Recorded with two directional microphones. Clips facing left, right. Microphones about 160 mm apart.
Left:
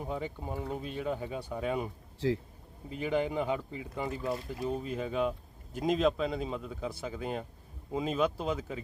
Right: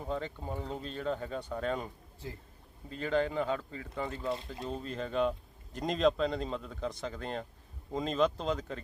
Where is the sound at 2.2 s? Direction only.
90° left.